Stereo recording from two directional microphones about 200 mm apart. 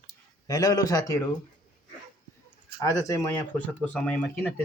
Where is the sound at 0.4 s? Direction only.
15° left (ahead or behind).